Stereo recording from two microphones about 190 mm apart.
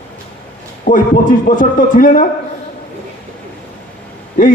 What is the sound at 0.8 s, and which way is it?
A man's voice, 45° left (ahead or behind).